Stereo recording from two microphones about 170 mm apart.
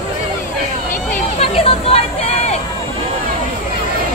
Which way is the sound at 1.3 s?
35° left (ahead or behind).